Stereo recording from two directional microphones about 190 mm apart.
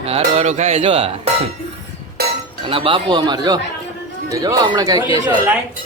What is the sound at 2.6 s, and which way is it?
Speech, 30° right (ahead or behind).